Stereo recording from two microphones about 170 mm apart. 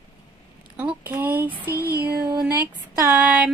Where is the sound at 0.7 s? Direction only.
10° right (ahead or behind).